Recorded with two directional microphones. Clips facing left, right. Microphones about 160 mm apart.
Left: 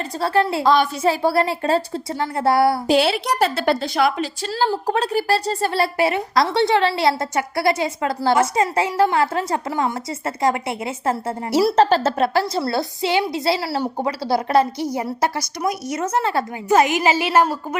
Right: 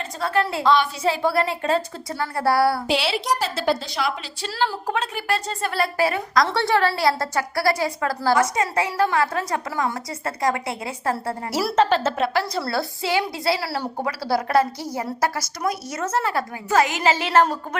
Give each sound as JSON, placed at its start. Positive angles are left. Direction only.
{"t": 0.2, "sound": "a woman's voice", "side_deg": 30}
{"t": 2.1, "sound": "a woman's voice", "side_deg": 20}
{"t": 2.8, "sound": "a woman's voice", "side_deg": 45}
{"t": 11.8, "sound": "a woman's voice", "side_deg": 35}